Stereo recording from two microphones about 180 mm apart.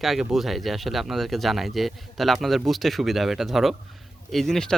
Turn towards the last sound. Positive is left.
turn(degrees=5)  # may be behind; listen again after turning